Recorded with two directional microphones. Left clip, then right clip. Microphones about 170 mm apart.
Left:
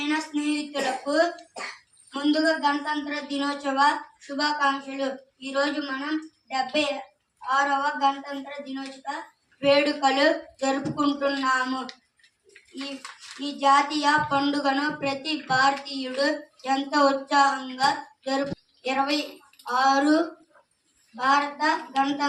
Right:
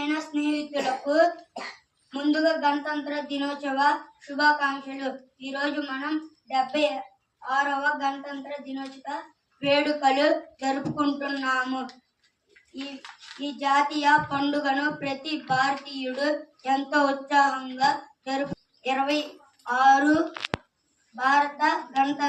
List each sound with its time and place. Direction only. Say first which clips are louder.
0.1 s a woman's voice: left 1 dB; 30° right (ahead or behind)
13.4 s a woman's voice: left 3 dB; 25° right (ahead or behind)